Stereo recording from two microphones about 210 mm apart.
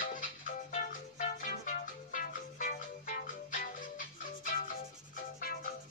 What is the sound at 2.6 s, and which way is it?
Music, 40° left (ahead or behind).